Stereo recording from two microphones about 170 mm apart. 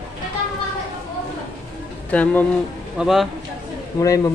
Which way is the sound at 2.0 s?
10° left (ahead or behind).